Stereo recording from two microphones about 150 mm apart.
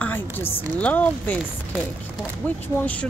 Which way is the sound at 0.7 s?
10° left (ahead or behind).